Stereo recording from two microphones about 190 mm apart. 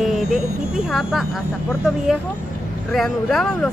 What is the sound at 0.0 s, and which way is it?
Speech, centre (ahead or behind).